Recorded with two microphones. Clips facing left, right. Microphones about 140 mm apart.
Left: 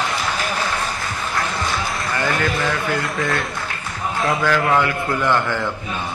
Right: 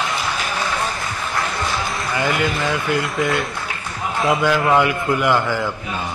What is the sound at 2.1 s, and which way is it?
Speech, 10° right (ahead or behind).